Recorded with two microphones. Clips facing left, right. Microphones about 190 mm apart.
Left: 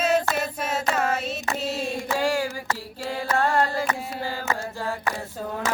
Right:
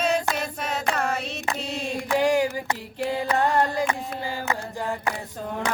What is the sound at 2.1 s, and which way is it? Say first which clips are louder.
Female singing: right 5 dB; 20° right (ahead or behind).